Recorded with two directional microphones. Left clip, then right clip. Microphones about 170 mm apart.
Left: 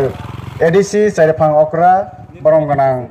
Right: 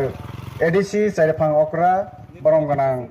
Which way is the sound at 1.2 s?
10° left (ahead or behind).